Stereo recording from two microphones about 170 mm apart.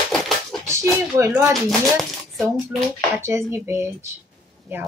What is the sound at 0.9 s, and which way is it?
Speech, 15° right (ahead or behind).